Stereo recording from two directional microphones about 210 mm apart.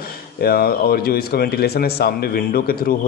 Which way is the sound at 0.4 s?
45° left (ahead or behind).